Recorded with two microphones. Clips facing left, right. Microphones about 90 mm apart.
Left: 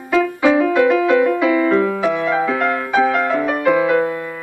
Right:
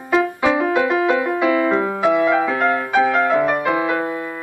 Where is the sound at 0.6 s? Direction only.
25° right (ahead or behind).